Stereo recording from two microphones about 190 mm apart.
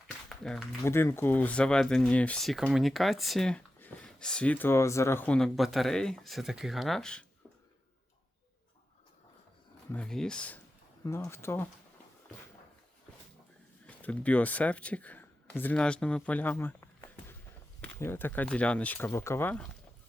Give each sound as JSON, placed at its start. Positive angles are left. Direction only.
{"t": 0.3, "sound": "a sound", "side_deg": 5}
{"t": 0.9, "sound": "speech", "side_deg": 15}
{"t": 9.9, "sound": "speech", "side_deg": 5}
{"t": 13.8, "sound": "speech", "side_deg": 5}